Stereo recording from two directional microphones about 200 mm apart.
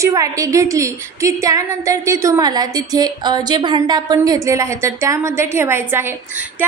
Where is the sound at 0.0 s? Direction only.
15° right (ahead or behind).